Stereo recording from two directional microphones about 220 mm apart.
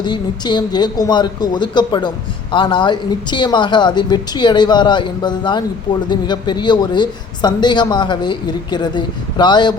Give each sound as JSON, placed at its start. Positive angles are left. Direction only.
{"t": 0.0, "sound": "speech", "side_deg": 20}